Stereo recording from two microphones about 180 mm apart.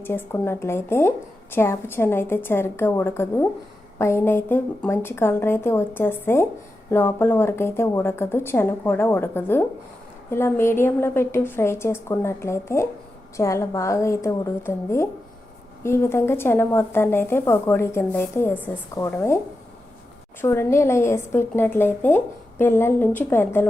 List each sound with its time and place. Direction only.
0.0 s a woman's voice: 10° left (ahead or behind)
20.4 s a woman's voice: 15° left (ahead or behind)